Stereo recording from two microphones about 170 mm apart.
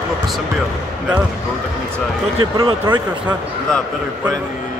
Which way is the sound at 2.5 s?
25° right (ahead or behind).